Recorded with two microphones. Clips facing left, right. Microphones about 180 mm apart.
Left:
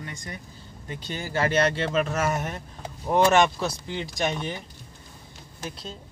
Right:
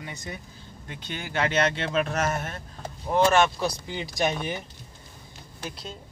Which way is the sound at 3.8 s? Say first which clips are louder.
Right 1 dB; 10° right (ahead or behind).